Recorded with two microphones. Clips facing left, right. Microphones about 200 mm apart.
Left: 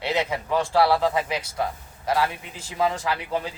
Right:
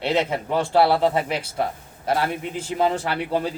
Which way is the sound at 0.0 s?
55° right (ahead or behind).